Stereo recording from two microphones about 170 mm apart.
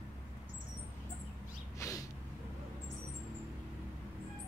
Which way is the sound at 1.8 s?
20° left (ahead or behind).